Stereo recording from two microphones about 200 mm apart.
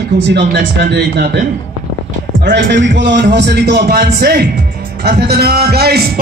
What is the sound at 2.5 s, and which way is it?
A man's voice, 60° right (ahead or behind).